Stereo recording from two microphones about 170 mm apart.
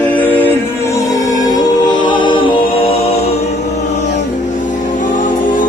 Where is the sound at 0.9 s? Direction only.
20° left (ahead or behind).